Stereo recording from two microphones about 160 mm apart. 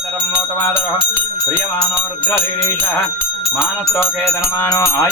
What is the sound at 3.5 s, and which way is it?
Music, 15° left (ahead or behind).